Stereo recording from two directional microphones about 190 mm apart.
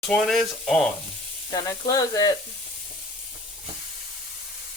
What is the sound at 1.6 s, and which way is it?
Speech, 15° left (ahead or behind).